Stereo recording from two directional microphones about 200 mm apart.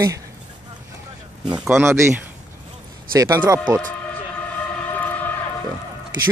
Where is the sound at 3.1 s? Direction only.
15° right (ahead or behind).